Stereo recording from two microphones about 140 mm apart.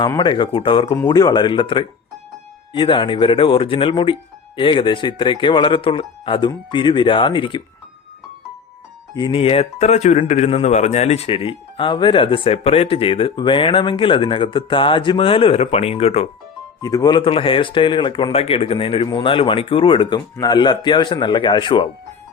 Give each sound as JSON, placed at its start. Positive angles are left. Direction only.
{"t": 0.2, "sound": "speech", "side_deg": 35}
{"t": 9.1, "sound": "speech", "side_deg": 40}
{"t": 16.8, "sound": "speech", "side_deg": 25}